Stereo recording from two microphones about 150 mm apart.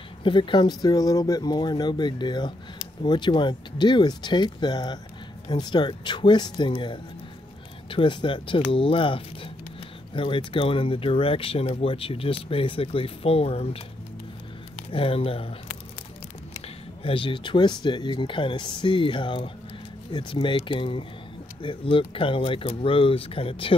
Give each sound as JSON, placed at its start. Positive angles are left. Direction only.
{"t": 0.2, "sound": "speech", "side_deg": 35}
{"t": 17.0, "sound": "speech", "side_deg": 35}